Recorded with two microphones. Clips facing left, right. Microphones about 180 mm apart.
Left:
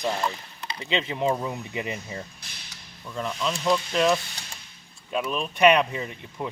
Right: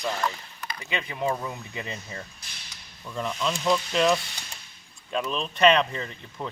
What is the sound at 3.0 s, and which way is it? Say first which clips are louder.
Speech: even; centre (ahead or behind).